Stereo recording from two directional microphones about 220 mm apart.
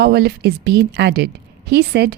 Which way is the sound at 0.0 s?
50° right (ahead or behind).